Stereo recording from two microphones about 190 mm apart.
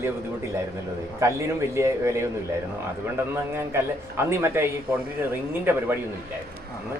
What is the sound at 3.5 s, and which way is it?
A man's voice, 15° right (ahead or behind).